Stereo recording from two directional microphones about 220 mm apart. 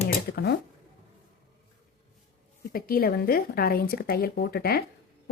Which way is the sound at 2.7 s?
40° left (ahead or behind).